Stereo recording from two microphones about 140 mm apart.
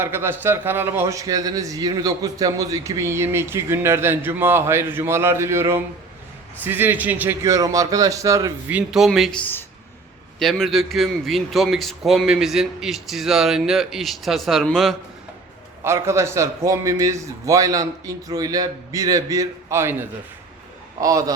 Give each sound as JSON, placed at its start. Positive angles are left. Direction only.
{"t": 0.0, "sound": "a man's voice", "side_deg": -15}
{"t": 8.7, "sound": "a man's voice", "side_deg": -5}
{"t": 9.4, "sound": "speech", "side_deg": 15}
{"t": 10.4, "sound": "a man's voice", "side_deg": 0}
{"t": 15.8, "sound": "a man's voice", "side_deg": -20}